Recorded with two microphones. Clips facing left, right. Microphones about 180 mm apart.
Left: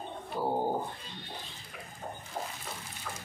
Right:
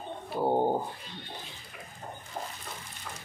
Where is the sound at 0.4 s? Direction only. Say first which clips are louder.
Right 5 dB; 25° right (ahead or behind).